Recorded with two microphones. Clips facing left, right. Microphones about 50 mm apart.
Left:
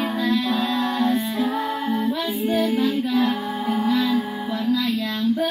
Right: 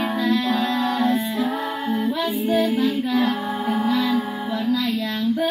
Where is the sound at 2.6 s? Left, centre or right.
Centre.